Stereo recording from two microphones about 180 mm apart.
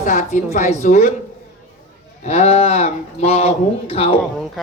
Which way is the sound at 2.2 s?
35° left (ahead or behind).